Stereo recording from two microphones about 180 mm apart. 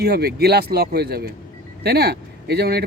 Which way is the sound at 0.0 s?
60° right (ahead or behind).